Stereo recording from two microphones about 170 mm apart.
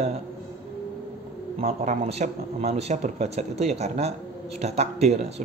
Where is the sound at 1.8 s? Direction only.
40° right (ahead or behind).